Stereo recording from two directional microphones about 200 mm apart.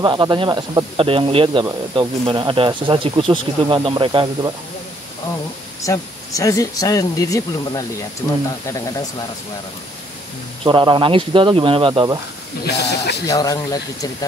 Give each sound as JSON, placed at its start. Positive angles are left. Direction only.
{"t": 0.0, "sound": "speech", "side_deg": -20}
{"t": 5.8, "sound": "speech", "side_deg": 15}
{"t": 10.6, "sound": "speech", "side_deg": -25}
{"t": 12.6, "sound": "speech", "side_deg": 55}
{"t": 13.3, "sound": "speech", "side_deg": 20}